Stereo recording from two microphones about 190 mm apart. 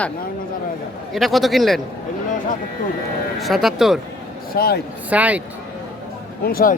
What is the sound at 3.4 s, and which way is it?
Speech, centre (ahead or behind).